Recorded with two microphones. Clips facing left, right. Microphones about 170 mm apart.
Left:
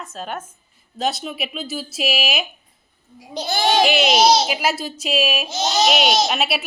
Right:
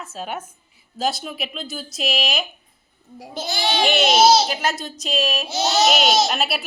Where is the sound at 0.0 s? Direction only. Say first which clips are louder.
Even; 5° right (ahead or behind).